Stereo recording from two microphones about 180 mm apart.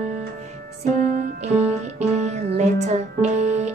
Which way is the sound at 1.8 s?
40° right (ahead or behind).